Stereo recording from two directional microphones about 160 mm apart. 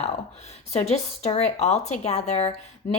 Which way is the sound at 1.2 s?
45° left (ahead or behind).